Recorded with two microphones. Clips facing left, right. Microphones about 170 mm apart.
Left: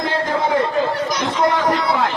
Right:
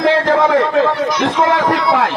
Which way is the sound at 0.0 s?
80° right.